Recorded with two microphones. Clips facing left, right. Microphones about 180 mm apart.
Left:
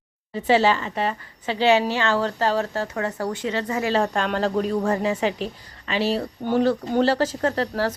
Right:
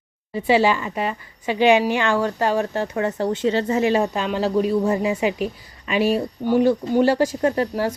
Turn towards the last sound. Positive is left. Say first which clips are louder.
# right 2 dB
turn(degrees=-15)  # may be behind; listen again after turning